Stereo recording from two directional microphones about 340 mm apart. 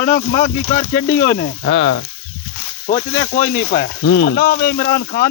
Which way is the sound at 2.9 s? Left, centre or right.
Centre.